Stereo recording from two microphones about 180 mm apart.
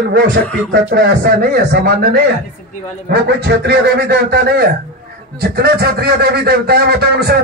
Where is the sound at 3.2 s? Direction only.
65° right (ahead or behind).